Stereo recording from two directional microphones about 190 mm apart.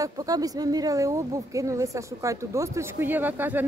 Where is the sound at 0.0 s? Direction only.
20° right (ahead or behind).